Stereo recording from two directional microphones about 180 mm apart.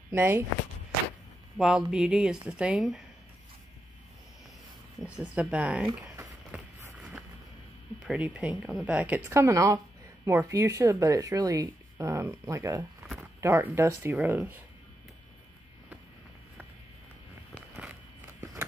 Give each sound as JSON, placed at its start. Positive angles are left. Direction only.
{"t": 0.1, "sound": "speech", "side_deg": -15}
{"t": 1.6, "sound": "speech", "side_deg": -5}
{"t": 5.0, "sound": "speech", "side_deg": -5}
{"t": 8.1, "sound": "speech", "side_deg": -5}
{"t": 13.0, "sound": "a sound", "side_deg": 0}
{"t": 13.4, "sound": "speech", "side_deg": -15}
{"t": 17.7, "sound": "walk", "side_deg": -5}